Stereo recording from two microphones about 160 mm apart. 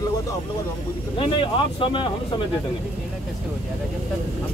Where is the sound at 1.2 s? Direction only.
35° left (ahead or behind).